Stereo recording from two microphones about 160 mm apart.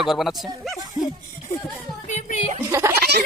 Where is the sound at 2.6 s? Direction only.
15° right (ahead or behind).